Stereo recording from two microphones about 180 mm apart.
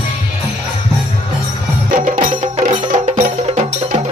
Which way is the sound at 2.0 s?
45° right (ahead or behind).